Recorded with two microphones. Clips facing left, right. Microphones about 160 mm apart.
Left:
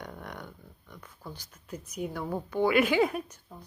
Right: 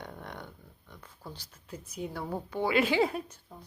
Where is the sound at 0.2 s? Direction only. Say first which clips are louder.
Left 1 dB; 25° right (ahead or behind).